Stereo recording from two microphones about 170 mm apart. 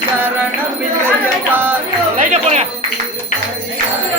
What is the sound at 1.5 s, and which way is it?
Music, 10° right (ahead or behind).